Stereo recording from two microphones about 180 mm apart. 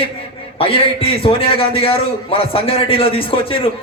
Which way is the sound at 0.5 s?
30° left (ahead or behind).